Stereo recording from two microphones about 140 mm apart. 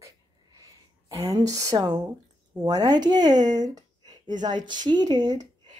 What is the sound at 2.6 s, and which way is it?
A woman's voice, 30° right (ahead or behind).